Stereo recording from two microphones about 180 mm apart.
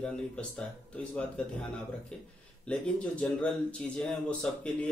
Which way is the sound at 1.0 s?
5° left (ahead or behind).